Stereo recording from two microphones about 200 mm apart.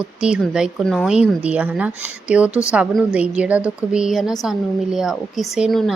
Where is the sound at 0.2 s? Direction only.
5° right (ahead or behind).